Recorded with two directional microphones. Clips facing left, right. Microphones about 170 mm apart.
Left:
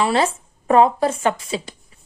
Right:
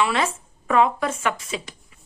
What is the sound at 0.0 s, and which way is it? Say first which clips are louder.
Speech: left 4 dB; 35° left (ahead or behind).